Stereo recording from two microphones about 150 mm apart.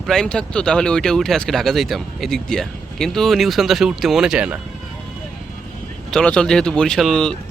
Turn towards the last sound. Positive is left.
turn(degrees=0)  # may be behind; listen again after turning